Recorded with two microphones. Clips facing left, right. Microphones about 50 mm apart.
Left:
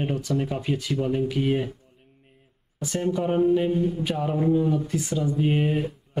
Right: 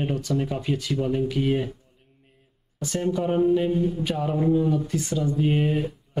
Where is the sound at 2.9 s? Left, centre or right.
Centre.